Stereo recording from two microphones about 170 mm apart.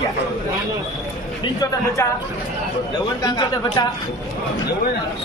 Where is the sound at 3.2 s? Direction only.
25° left (ahead or behind).